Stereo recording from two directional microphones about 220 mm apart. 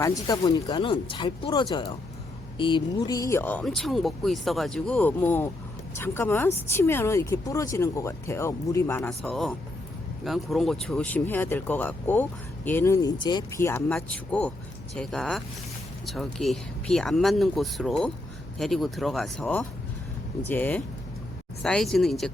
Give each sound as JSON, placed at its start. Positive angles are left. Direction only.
{"t": 0.0, "sound": "speech", "side_deg": 15}